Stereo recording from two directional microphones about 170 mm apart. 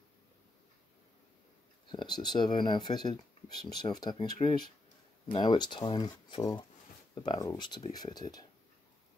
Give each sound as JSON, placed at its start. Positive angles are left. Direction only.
{"t": 1.9, "sound": "speech", "side_deg": 25}